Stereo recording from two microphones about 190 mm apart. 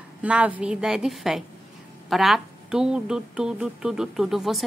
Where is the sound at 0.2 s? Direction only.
5° right (ahead or behind).